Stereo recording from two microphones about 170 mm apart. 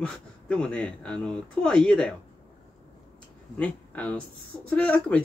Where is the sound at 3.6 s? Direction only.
5° left (ahead or behind).